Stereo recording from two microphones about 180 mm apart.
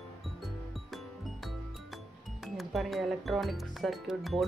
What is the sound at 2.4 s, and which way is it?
Speech, centre (ahead or behind).